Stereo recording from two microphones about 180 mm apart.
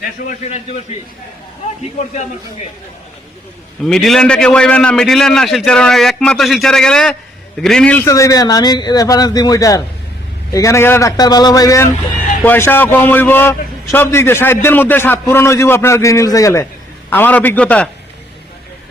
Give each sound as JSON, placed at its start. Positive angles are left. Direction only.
{"t": 0.3, "sound": "a man's voice", "side_deg": 35}
{"t": 3.8, "sound": "a man's voice", "side_deg": 0}
{"t": 8.0, "sound": "a man's voice", "side_deg": 20}